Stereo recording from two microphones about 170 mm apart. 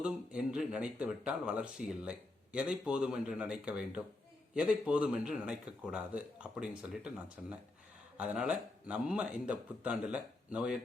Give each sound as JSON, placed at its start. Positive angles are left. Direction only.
{"t": 0.0, "sound": "speech", "side_deg": -5}